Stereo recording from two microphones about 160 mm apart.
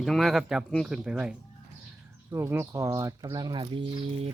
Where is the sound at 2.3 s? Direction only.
15° right (ahead or behind).